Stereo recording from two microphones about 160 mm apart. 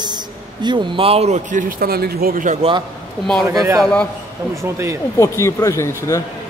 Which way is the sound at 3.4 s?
20° right (ahead or behind).